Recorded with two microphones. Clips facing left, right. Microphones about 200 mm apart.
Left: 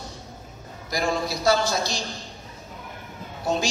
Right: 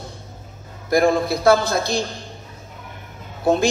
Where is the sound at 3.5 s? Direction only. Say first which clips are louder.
Right 7 dB; 55° right (ahead or behind).